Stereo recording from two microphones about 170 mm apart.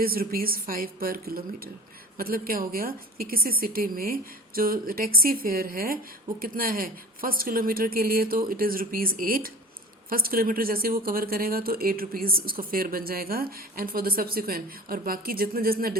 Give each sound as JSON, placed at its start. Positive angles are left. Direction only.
{"t": 0.0, "sound": "a woman's voice", "side_deg": -60}